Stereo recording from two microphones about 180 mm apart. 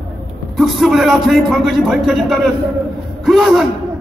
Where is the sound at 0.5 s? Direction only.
Centre (ahead or behind).